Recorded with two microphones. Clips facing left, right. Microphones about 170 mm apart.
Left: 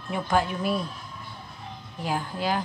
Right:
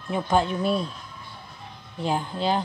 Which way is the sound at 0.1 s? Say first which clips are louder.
Right 2 dB; 25° right (ahead or behind).